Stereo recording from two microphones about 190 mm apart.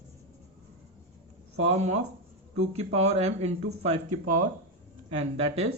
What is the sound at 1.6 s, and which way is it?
Speech, 35° right (ahead or behind).